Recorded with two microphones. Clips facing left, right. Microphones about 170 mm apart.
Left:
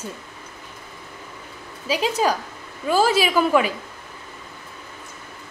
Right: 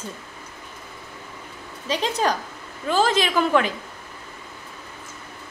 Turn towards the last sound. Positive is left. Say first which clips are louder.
# left 2 dB
turn(degrees=10)  # may be behind; listen again after turning